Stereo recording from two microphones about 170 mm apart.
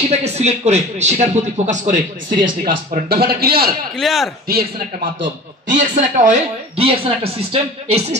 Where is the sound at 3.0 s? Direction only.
65° right (ahead or behind).